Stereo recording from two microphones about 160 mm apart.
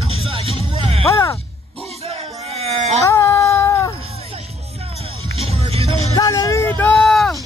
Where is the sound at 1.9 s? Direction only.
40° right (ahead or behind).